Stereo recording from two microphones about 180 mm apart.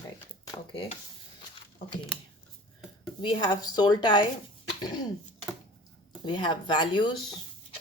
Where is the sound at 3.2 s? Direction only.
25° left (ahead or behind).